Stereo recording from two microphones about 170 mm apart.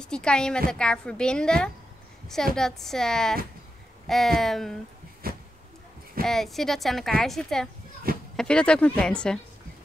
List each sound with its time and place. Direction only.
0.0 s speech: 5° left (ahead or behind)
5.2 s a sound: 60° right (ahead or behind)
6.2 s speech: centre (ahead or behind)